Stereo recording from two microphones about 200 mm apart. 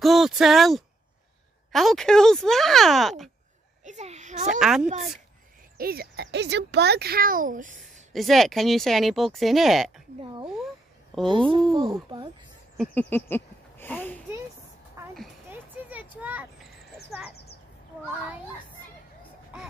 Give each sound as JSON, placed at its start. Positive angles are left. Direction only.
{"t": 0.0, "sound": "speech", "side_deg": 0}
{"t": 3.8, "sound": "a sound", "side_deg": -35}
{"t": 4.6, "sound": "speech", "side_deg": -5}
{"t": 4.8, "sound": "speech", "side_deg": -35}
{"t": 5.8, "sound": "speech", "side_deg": -50}
{"t": 8.1, "sound": "speech", "side_deg": 0}
{"t": 11.2, "sound": "speech", "side_deg": -25}
{"t": 12.7, "sound": "a sound", "side_deg": 5}
{"t": 15.0, "sound": "a sound", "side_deg": -15}